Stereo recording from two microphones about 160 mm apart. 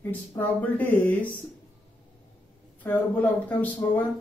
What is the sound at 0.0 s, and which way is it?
A woman's voice, 15° left (ahead or behind).